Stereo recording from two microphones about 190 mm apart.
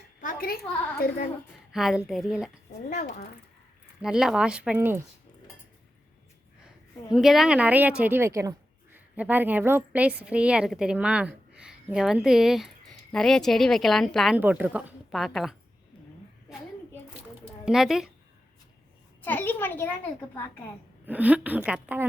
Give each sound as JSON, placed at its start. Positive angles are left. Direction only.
{"t": 0.2, "sound": "a woman's voice", "side_deg": 45}
{"t": 1.7, "sound": "a woman's voice", "side_deg": 0}
{"t": 4.0, "sound": "speech", "side_deg": -5}
{"t": 7.1, "sound": "a woman's voice", "side_deg": 0}
{"t": 17.7, "sound": "speech", "side_deg": 0}
{"t": 19.2, "sound": "a child's voice", "side_deg": 10}
{"t": 21.1, "sound": "a woman's voice", "side_deg": -10}